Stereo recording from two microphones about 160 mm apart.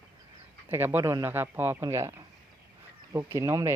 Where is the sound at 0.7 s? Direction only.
15° right (ahead or behind).